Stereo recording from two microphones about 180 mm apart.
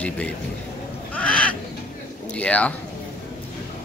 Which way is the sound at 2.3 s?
5° left (ahead or behind).